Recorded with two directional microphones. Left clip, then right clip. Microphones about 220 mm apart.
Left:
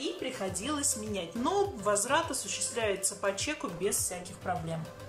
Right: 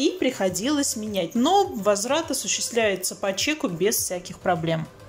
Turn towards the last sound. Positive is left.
turn(degrees=-30)  # may be behind; listen again after turning